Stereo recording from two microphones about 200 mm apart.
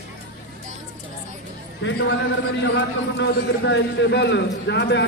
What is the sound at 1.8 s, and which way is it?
Speech, 65° left (ahead or behind).